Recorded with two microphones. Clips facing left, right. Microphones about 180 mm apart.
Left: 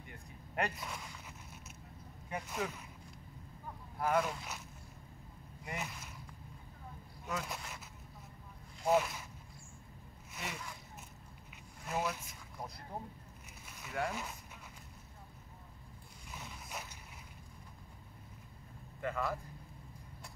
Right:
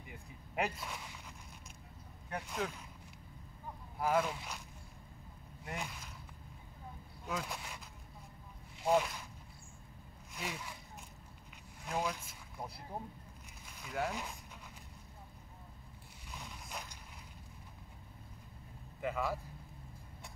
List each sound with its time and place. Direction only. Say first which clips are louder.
0.0 s zipper: even; 5° right (ahead or behind)
2.2 s speech: even; 5° left (ahead or behind)
4.0 s speech: even; 5° right (ahead or behind)
5.7 s speech: even; 5° left (ahead or behind)
7.3 s speech: even; centre (ahead or behind)
8.8 s speech: even; 5° left (ahead or behind)
10.3 s speech: right 1 dB; centre (ahead or behind)
11.8 s speech: even; 5° left (ahead or behind)
16.3 s a sound: even; 5° left (ahead or behind)
18.9 s a man's voice: right 1 dB; 5° right (ahead or behind)